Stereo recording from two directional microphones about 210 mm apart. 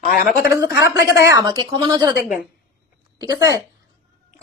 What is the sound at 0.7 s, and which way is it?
Speech, 55° left (ahead or behind).